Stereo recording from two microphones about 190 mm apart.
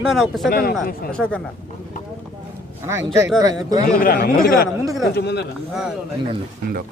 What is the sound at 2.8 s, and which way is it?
Speech, 15° right (ahead or behind).